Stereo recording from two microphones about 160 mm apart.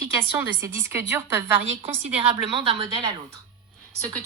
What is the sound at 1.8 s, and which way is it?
A woman's voice, 35° right (ahead or behind).